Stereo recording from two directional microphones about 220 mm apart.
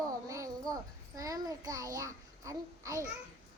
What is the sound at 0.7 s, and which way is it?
A child's voice, 15° right (ahead or behind).